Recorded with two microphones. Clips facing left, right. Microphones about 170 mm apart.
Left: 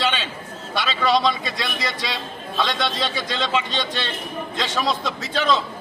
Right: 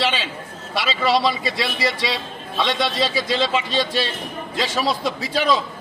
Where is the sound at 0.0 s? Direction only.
5° right (ahead or behind).